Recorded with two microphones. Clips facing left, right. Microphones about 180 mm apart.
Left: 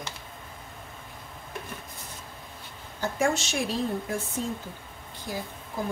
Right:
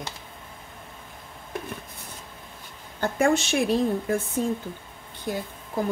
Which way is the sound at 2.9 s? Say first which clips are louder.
Right 4 dB; 60° right (ahead or behind).